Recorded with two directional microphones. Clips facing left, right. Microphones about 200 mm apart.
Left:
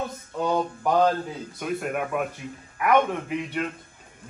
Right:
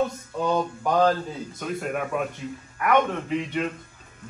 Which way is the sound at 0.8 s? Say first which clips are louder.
Even; 5° left (ahead or behind).